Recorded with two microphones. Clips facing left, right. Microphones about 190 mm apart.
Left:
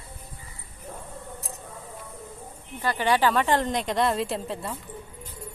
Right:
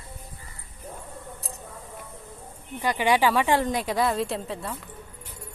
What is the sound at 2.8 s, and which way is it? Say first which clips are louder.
A woman's voice: right 1 dB; 15° right (ahead or behind).